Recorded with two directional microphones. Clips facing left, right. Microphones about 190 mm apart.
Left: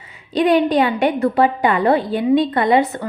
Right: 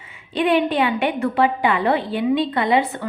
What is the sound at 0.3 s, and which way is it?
A woman's voice, 40° left (ahead or behind).